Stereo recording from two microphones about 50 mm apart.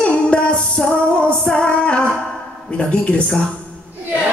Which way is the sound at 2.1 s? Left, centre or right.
Centre.